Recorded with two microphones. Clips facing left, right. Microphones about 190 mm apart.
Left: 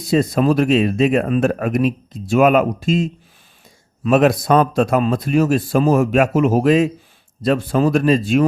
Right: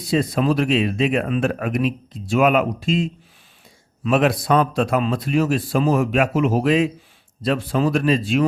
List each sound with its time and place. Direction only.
0.0 s speech: 45° left (ahead or behind)